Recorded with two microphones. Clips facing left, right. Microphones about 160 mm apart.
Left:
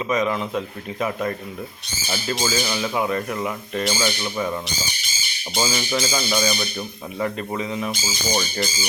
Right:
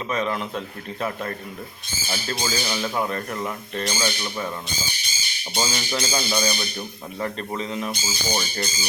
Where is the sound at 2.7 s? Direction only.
5° left (ahead or behind).